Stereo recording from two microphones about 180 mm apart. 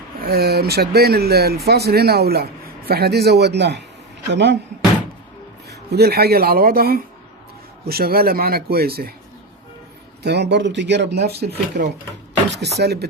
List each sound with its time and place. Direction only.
0.2 s speech: 60° right (ahead or behind); by 4.5 s 75° right (ahead or behind)
5.9 s speech: 60° right (ahead or behind)
10.2 s speech: 70° right (ahead or behind)